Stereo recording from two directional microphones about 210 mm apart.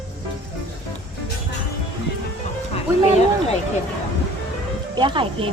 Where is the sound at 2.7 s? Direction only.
30° left (ahead or behind).